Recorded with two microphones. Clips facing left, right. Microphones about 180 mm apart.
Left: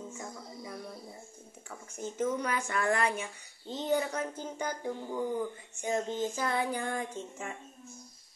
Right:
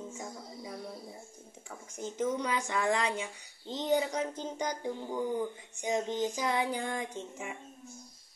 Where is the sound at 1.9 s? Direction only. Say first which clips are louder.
Even; 15° right (ahead or behind).